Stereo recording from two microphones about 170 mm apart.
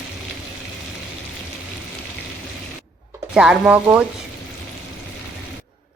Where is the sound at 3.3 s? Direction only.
5° right (ahead or behind).